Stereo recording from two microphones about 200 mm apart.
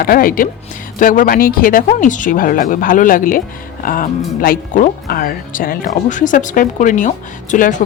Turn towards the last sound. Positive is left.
turn(degrees=40)  # may be behind; listen again after turning